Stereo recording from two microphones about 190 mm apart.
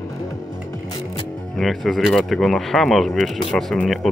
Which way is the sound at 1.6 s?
Centre (ahead or behind).